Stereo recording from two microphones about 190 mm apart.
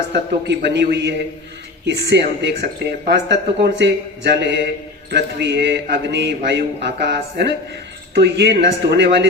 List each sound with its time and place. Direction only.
0.1 s a man's voice: 65° right (ahead or behind)